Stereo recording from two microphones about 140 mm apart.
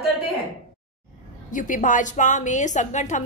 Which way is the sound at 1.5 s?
70° left (ahead or behind).